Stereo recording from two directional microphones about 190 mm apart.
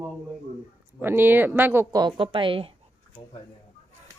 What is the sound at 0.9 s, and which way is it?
Speech, 10° right (ahead or behind).